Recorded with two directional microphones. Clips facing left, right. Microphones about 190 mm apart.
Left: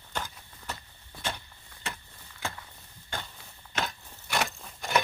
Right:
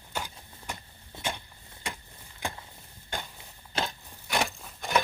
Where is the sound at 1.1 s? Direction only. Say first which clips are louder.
Right 1 dB; 20° right (ahead or behind).